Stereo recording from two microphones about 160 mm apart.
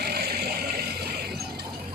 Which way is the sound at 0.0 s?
80° right.